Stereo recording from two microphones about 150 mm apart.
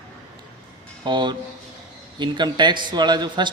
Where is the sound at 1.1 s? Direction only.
30° right (ahead or behind).